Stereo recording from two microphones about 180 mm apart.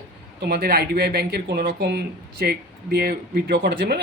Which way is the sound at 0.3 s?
60° right (ahead or behind).